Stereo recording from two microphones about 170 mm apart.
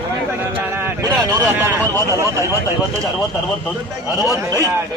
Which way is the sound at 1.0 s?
20° right (ahead or behind).